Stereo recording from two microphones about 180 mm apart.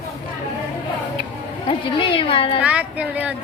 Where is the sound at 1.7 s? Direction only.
30° left (ahead or behind).